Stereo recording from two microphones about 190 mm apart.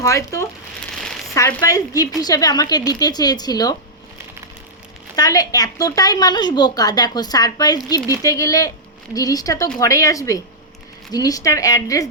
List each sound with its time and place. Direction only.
0.0 s a woman's voice: 15° left (ahead or behind)
5.1 s a woman's voice: 20° left (ahead or behind)